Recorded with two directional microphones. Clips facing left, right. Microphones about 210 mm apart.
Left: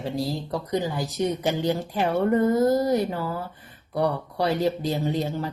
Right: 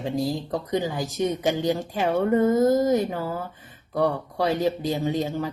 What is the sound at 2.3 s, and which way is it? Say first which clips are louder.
Speech: right 2 dB; 20° right (ahead or behind).